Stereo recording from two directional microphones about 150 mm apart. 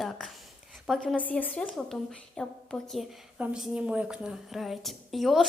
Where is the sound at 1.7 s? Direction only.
Centre (ahead or behind).